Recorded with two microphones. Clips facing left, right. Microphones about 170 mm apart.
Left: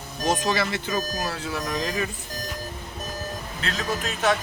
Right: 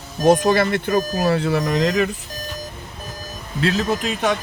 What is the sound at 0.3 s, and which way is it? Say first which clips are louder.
Speech: right 9 dB; 55° right (ahead or behind).